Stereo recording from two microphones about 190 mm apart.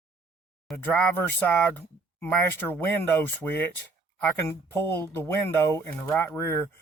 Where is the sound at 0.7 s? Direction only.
10° left (ahead or behind).